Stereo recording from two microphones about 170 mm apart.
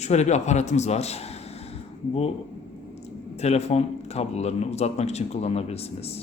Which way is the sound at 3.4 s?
40° left (ahead or behind).